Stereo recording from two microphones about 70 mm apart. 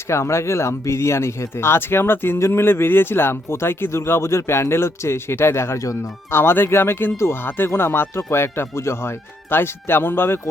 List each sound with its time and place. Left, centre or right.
0.1 s speech: left
5.8 s speech: left
6.3 s speech: left